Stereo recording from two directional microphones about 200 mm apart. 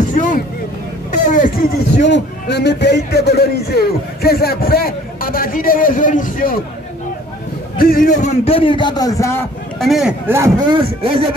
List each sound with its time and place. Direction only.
0.1 s a sound: 40° left (ahead or behind)
2.0 s a man's voice: 60° left (ahead or behind); by 6.6 s 45° left (ahead or behind)
7.7 s a man's voice: 45° left (ahead or behind); by 9.5 s 15° left (ahead or behind)
9.8 s speech: centre (ahead or behind); by 11.2 s 25° right (ahead or behind)